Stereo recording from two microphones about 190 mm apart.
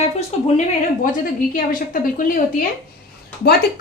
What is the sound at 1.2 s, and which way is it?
A woman's voice, 45° left (ahead or behind).